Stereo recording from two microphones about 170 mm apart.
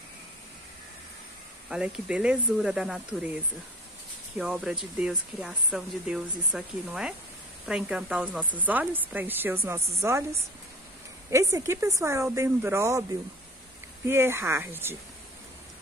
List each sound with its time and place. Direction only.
1.7 s speech: 5° right (ahead or behind)
4.4 s speech: 5° right (ahead or behind)
14.0 s speech: 15° right (ahead or behind)